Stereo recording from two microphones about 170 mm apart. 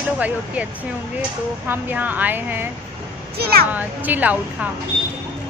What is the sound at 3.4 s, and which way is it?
Speech, 65° right (ahead or behind).